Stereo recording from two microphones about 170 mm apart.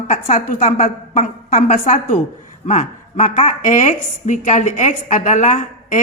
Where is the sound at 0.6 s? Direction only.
40° left (ahead or behind).